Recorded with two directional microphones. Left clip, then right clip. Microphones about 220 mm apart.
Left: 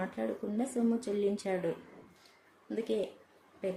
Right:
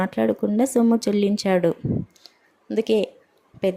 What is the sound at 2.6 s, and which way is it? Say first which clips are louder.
Speech: right 13 dB; 40° right (ahead or behind).